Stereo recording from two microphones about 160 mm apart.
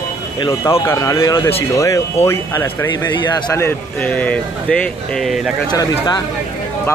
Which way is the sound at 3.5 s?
10° left (ahead or behind).